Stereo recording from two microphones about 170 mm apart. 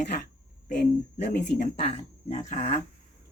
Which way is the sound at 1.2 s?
45° left (ahead or behind).